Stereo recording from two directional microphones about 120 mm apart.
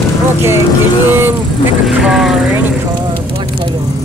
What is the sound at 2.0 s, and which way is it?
Vehicle, 5° right (ahead or behind).